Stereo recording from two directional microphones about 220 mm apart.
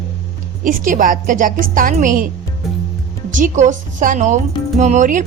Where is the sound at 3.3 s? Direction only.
35° right (ahead or behind).